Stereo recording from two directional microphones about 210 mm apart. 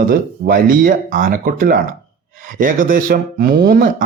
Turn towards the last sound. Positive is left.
turn(degrees=-40)  # may be behind; listen again after turning